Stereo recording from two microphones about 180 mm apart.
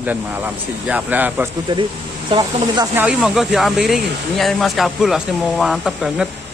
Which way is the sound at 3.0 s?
5° right (ahead or behind).